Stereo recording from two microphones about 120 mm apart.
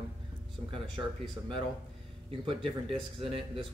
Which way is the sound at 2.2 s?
45° right (ahead or behind).